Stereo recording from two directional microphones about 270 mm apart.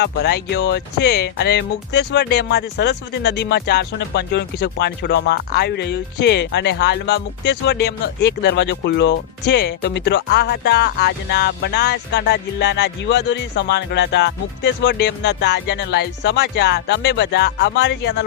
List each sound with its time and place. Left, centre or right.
0.0 s speech: left